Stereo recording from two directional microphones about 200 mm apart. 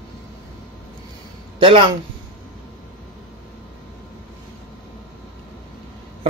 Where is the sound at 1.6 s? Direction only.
25° right (ahead or behind).